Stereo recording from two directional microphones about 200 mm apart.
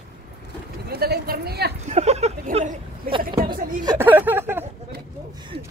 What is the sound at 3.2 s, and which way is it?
Vehicle, 45° right (ahead or behind).